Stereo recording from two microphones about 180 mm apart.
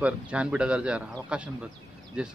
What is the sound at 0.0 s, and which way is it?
Speech, 5° right (ahead or behind).